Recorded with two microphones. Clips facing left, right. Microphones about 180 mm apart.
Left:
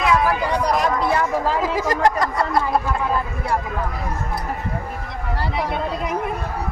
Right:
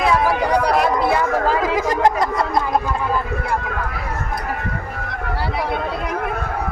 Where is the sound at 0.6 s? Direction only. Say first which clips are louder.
Right 2 dB; 65° right (ahead or behind).